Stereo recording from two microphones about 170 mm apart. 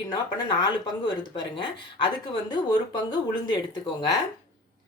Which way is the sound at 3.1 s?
25° left (ahead or behind).